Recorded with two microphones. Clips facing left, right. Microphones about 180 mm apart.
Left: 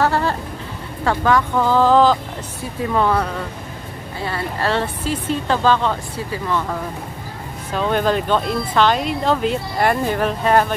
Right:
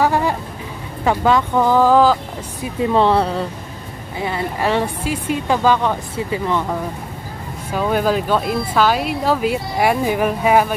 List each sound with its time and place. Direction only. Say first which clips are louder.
0.0 s a sound: right 1 dB; 15° right (ahead or behind)
1.0 s speech: right 2 dB; 20° right (ahead or behind)
2.8 s speech: right 4 dB; 25° right (ahead or behind)
4.2 s speech: right 2 dB; 15° right (ahead or behind)
7.7 s speech: right 1 dB; 10° right (ahead or behind)